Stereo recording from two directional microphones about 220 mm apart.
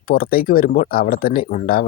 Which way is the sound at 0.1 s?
40° left (ahead or behind).